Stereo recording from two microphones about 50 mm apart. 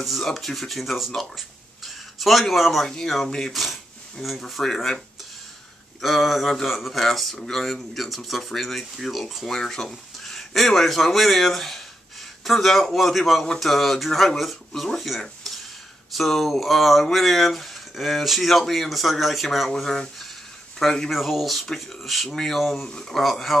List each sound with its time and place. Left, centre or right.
0.0 s speech: centre
3.5 s speech: centre
22.8 s speech: centre
23.1 s speech: centre